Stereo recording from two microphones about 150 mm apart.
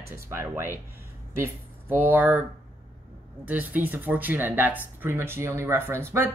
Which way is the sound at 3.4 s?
10° right (ahead or behind).